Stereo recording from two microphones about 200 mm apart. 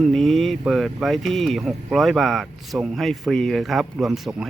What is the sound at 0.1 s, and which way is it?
Speech, centre (ahead or behind).